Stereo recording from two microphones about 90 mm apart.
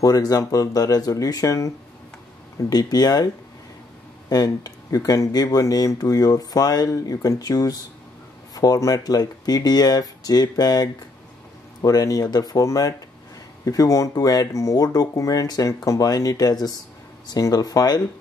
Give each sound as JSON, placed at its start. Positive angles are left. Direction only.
{"t": 0.0, "sound": "speech", "side_deg": 45}
{"t": 2.7, "sound": "speech", "side_deg": 45}
{"t": 4.3, "sound": "speech", "side_deg": 45}